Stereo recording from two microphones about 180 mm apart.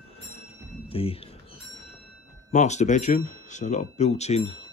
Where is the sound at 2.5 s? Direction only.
40° left (ahead or behind).